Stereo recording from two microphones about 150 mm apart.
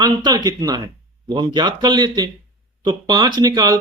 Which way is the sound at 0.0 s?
30° right (ahead or behind).